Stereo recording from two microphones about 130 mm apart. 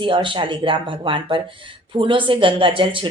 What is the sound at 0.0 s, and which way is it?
A woman's voice, 40° right (ahead or behind).